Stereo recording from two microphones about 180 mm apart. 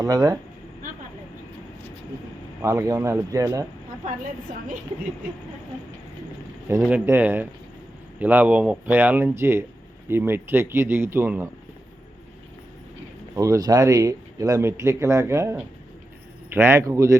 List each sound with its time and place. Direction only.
0.0 s speech: 20° right (ahead or behind)
2.6 s speech: 15° right (ahead or behind)
6.7 s speech: 10° right (ahead or behind)
13.3 s speech: 20° right (ahead or behind)
16.6 s speech: 15° right (ahead or behind)